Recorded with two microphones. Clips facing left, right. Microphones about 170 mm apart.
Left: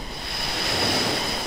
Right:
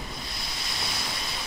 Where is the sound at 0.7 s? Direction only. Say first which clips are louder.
Left 12 dB; 70° left (ahead or behind).